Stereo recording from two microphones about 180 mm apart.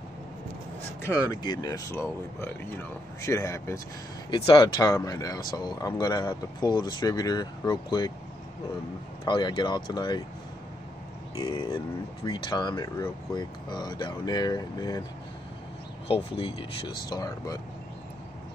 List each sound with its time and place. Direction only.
1.0 s speech: 15° left (ahead or behind)
9.2 s speech: 25° left (ahead or behind)
11.4 s speech: 25° left (ahead or behind)
16.1 s speech: 30° left (ahead or behind)